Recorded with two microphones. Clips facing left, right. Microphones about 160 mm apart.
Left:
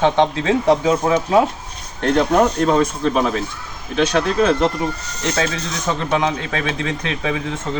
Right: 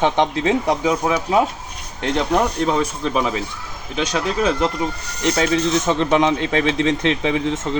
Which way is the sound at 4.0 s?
10° right (ahead or behind).